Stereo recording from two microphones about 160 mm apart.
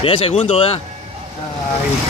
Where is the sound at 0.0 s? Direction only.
35° left (ahead or behind).